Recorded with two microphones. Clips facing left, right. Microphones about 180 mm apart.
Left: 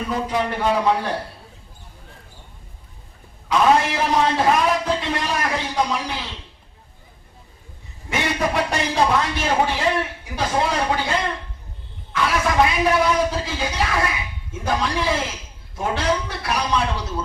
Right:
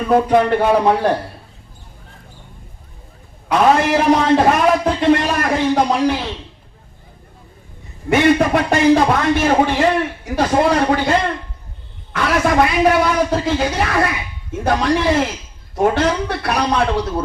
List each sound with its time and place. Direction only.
0.1 s a man's voice: 55° right (ahead or behind)
3.5 s a sound: 60° right (ahead or behind)
8.1 s a man's voice: 60° right (ahead or behind)